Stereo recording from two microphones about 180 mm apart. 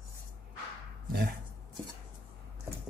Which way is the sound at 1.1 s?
60° right (ahead or behind).